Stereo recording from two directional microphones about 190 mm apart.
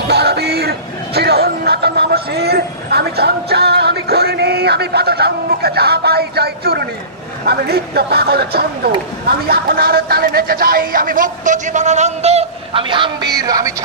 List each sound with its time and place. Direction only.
0.1 s speech: 60° right (ahead or behind); by 13.8 s 20° right (ahead or behind)